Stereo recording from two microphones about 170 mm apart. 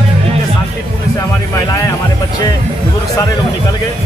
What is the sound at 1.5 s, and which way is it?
Music, 20° left (ahead or behind).